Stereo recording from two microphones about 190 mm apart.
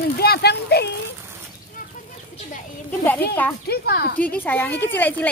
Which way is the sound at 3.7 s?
55° left (ahead or behind).